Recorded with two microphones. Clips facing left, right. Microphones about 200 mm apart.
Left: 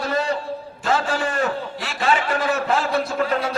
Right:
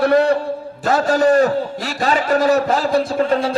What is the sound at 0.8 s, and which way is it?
A man's voice, 40° right (ahead or behind).